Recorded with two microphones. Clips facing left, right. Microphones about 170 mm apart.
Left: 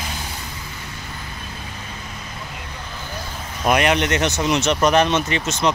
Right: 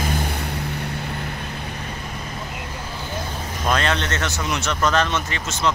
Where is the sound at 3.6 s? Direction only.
15° left (ahead or behind).